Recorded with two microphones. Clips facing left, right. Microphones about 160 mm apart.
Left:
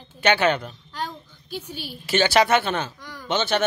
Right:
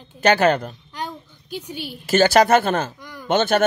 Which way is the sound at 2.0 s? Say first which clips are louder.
Right 4 dB; 45° right (ahead or behind).